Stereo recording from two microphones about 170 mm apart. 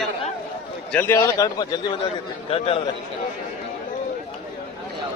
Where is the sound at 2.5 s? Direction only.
35° left (ahead or behind).